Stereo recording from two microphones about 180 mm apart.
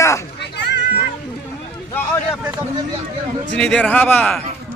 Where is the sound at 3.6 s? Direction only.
5° left (ahead or behind).